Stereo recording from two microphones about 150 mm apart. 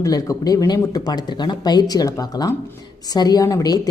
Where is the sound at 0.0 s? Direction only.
20° left (ahead or behind).